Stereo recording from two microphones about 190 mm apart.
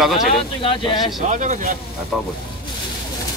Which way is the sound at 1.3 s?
40° right (ahead or behind).